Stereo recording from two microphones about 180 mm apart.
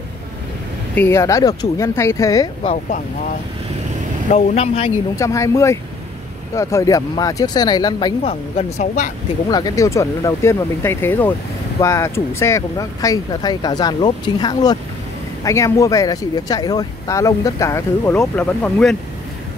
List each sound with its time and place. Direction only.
0.9 s speech: 15° left (ahead or behind)
2.6 s speech: 35° left (ahead or behind)
4.3 s speech: 35° left (ahead or behind)
5.1 s speech: 15° left (ahead or behind)
8.2 s speech: 35° left (ahead or behind)
9.5 s speech: 20° left (ahead or behind)